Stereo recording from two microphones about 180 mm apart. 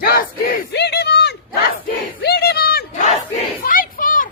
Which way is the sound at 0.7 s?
65° left (ahead or behind).